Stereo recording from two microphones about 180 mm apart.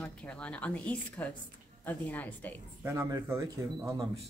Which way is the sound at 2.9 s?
15° right (ahead or behind).